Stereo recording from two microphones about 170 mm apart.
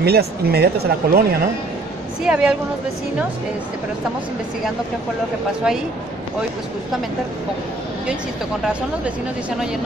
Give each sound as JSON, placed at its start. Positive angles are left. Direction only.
{"t": 0.0, "sound": "speech", "side_deg": -70}
{"t": 2.2, "sound": "a woman's voice", "side_deg": -5}